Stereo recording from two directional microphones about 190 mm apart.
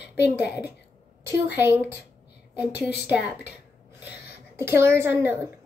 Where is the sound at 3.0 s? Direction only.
10° right (ahead or behind).